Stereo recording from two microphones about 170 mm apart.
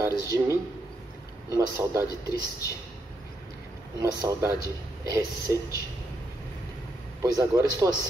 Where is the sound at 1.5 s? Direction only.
20° right (ahead or behind).